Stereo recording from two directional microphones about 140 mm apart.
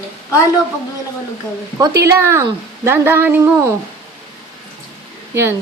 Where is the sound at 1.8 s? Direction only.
20° right (ahead or behind).